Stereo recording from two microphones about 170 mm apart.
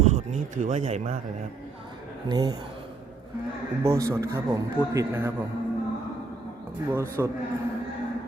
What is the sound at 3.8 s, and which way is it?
A man's voice, 15° right (ahead or behind).